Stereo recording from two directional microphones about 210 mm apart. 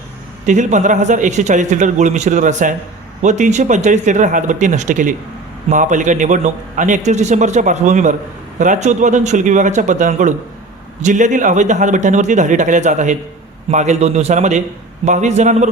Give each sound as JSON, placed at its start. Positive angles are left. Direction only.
{"t": 0.4, "sound": "a man's voice", "side_deg": -35}